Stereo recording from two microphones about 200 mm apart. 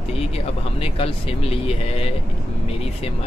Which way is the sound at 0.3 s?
30° left (ahead or behind).